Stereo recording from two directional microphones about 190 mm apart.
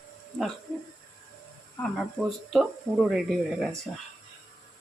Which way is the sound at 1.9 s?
Centre (ahead or behind).